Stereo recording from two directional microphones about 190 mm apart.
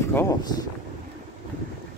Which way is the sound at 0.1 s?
15° left (ahead or behind).